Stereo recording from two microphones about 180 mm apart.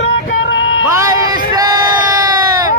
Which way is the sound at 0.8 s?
15° right (ahead or behind).